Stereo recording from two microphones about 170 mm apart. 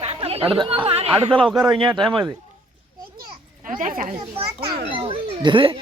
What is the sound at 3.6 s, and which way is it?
Speech, 50° right (ahead or behind).